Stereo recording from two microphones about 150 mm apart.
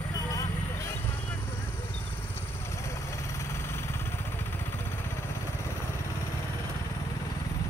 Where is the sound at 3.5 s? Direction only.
15° left (ahead or behind).